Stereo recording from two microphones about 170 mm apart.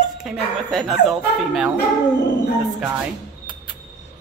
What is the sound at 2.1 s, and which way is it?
Dog, 90° left.